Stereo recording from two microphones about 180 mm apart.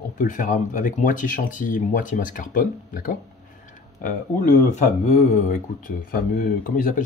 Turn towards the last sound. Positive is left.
turn(degrees=45)  # may be behind; listen again after turning